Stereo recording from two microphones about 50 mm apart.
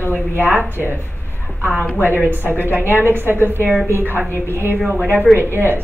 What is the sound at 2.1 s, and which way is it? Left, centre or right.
Speech, right.